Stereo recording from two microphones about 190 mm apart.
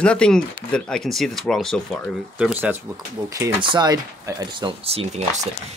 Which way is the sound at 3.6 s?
20° right (ahead or behind).